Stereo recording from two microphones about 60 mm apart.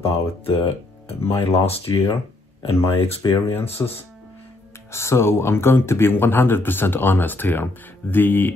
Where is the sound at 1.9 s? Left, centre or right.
Left.